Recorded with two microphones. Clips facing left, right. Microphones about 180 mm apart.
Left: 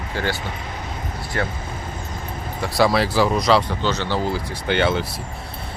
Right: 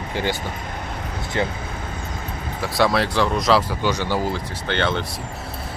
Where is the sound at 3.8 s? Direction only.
10° right (ahead or behind).